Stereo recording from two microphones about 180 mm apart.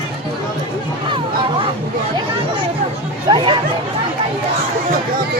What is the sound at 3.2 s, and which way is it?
Chatter, 25° right (ahead or behind).